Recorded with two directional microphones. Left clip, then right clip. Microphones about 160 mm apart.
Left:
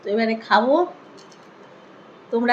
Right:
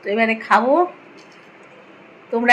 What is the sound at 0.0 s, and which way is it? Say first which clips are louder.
Speech: right 3 dB; 10° right (ahead or behind).